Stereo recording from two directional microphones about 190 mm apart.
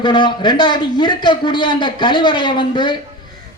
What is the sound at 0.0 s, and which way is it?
A man's voice, 25° left (ahead or behind).